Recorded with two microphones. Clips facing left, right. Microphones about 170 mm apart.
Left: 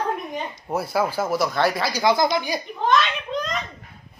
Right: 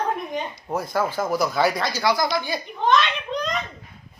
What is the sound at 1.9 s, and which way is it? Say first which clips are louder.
Speech: left 2 dB; 20° left (ahead or behind).